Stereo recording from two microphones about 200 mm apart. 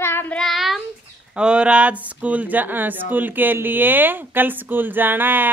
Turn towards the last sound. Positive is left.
turn(degrees=-10)  # may be behind; listen again after turning